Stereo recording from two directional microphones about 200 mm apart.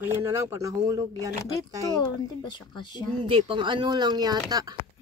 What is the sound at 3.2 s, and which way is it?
Speech, 25° right (ahead or behind).